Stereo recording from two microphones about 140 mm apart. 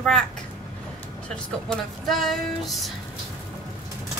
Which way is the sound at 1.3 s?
5° left (ahead or behind).